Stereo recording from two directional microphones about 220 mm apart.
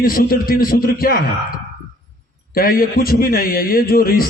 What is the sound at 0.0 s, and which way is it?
A man's voice, 40° left (ahead or behind).